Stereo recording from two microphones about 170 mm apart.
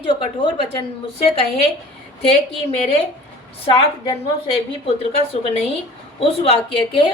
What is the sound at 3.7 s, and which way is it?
Speech, 30° left (ahead or behind).